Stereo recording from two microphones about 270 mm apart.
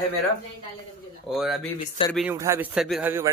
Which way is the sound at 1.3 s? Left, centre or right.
Centre.